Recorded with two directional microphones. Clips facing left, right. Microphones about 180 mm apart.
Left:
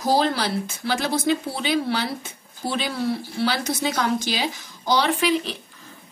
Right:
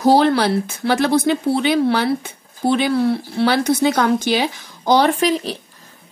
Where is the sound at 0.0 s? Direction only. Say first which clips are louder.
Right 7 dB; 65° right (ahead or behind); by 5.6 s 40° right (ahead or behind).